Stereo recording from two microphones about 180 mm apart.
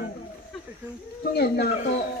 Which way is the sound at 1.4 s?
65° left (ahead or behind).